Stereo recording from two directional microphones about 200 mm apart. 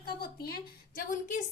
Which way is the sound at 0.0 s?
50° left (ahead or behind).